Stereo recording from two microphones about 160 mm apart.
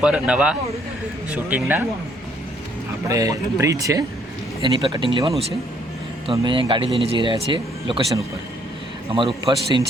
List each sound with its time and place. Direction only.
0.0 s a man's voice: 5° right (ahead or behind)
3.1 s speech: 20° right (ahead or behind)
6.3 s speech: 30° right (ahead or behind)
9.5 s speech: 30° right (ahead or behind)